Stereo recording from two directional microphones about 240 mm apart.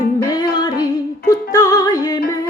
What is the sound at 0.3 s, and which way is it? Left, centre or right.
Music, centre.